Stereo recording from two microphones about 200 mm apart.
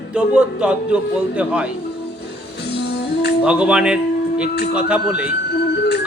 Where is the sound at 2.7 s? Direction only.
55° left (ahead or behind).